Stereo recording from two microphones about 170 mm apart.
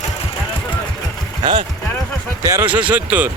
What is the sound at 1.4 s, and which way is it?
Speech, 30° right (ahead or behind).